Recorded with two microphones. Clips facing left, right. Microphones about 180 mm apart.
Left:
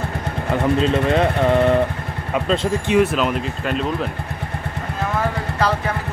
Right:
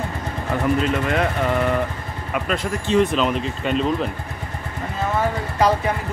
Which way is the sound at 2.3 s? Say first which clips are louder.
Left 4 dB; 25° left (ahead or behind).